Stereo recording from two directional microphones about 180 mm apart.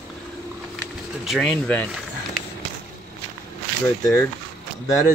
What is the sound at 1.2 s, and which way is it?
Speech, centre (ahead or behind).